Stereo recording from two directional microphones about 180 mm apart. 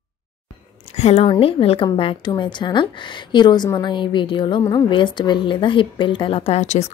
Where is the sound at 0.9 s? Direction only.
35° left (ahead or behind).